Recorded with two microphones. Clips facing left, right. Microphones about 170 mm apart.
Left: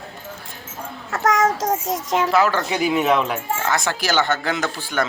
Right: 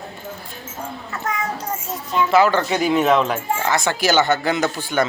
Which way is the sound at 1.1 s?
90° left.